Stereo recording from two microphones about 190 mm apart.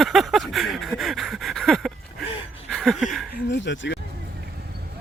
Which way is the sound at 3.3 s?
65° left (ahead or behind).